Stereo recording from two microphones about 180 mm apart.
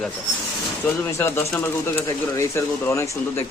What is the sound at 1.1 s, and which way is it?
Speech, 15° left (ahead or behind).